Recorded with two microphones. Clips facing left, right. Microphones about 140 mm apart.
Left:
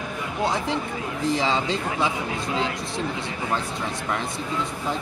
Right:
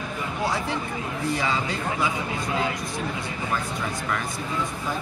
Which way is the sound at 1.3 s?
25° left (ahead or behind).